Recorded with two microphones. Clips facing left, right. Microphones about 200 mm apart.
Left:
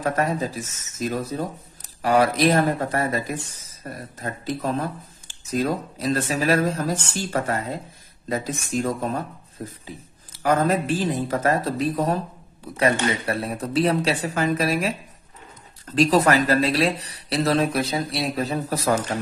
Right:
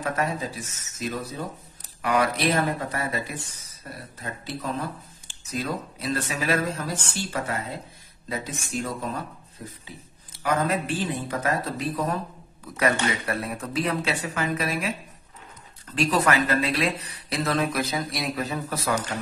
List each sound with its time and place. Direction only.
0.0 s speech: 40° left (ahead or behind)
12.7 s speech: 25° left (ahead or behind)
16.0 s speech: 35° left (ahead or behind)